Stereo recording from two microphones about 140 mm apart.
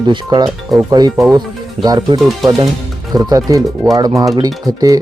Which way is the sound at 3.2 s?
25° right (ahead or behind).